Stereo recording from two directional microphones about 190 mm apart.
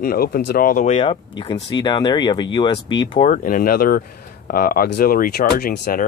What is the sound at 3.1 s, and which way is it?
Speech, 40° left (ahead or behind).